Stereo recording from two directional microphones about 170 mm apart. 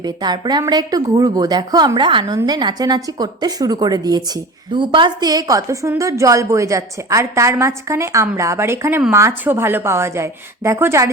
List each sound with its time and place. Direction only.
0.0 s a woman's voice: 25° right (ahead or behind)